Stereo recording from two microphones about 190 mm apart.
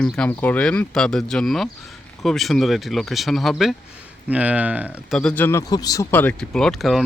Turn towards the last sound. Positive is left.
turn(degrees=0)  # may be behind; listen again after turning